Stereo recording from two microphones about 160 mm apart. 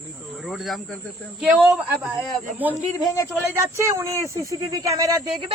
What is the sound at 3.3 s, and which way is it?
Speech, 15° right (ahead or behind).